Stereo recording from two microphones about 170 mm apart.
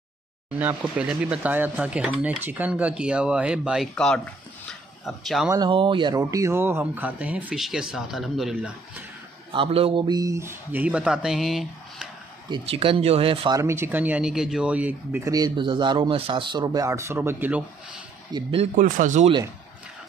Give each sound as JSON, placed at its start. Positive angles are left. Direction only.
{"t": 0.6, "sound": "speech", "side_deg": -10}
{"t": 5.5, "sound": "speech", "side_deg": -25}
{"t": 9.5, "sound": "speech", "side_deg": -30}
{"t": 12.4, "sound": "speech", "side_deg": -30}
{"t": 13.6, "sound": "speech", "side_deg": -15}
{"t": 18.3, "sound": "speech", "side_deg": -30}
{"t": 18.8, "sound": "speech", "side_deg": -50}